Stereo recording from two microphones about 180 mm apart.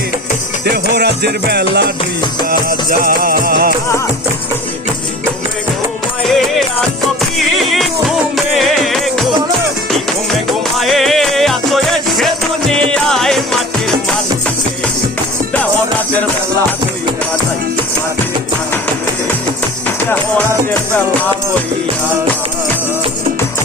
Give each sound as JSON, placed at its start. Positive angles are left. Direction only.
{"t": 0.6, "sound": "music", "side_deg": -65}
{"t": 2.5, "sound": "music", "side_deg": -50}
{"t": 6.2, "sound": "music", "side_deg": 0}
{"t": 10.8, "sound": "music", "side_deg": 0}